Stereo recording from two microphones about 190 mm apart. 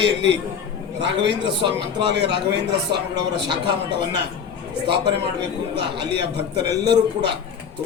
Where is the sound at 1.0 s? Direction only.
70° right (ahead or behind).